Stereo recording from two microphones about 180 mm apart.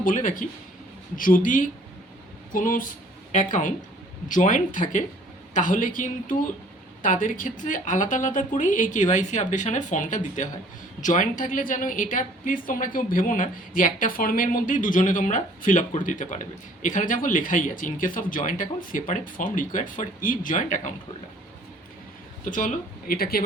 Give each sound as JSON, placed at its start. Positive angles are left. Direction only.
{"t": 0.0, "sound": "a woman's voice", "side_deg": 45}
{"t": 22.4, "sound": "a woman's voice", "side_deg": 45}